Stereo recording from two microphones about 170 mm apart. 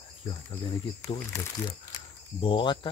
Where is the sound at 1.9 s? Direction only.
30° left (ahead or behind).